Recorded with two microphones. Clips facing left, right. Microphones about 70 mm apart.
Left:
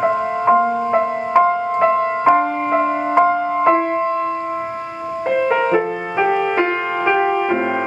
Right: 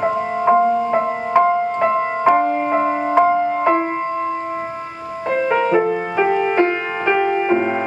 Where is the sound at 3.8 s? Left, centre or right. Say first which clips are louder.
Left 3 dB; centre.